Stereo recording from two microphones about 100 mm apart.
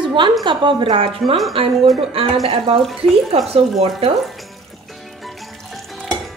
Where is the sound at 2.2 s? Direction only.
70° right (ahead or behind).